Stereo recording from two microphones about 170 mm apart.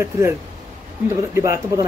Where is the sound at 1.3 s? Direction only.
15° right (ahead or behind).